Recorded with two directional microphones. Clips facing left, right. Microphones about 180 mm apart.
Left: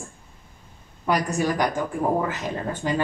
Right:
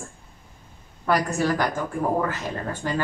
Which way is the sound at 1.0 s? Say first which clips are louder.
Even; 15° left (ahead or behind).